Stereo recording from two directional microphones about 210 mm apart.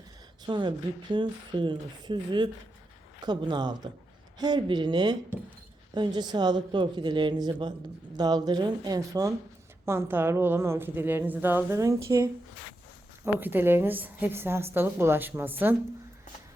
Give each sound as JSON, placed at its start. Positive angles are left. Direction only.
{"t": 0.4, "sound": "a woman's voice", "side_deg": -20}